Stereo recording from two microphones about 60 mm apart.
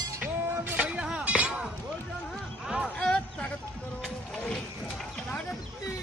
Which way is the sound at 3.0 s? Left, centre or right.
Centre.